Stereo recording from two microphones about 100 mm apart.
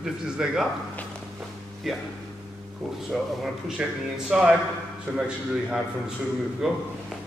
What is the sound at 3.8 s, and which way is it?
A man's voice, 10° right (ahead or behind).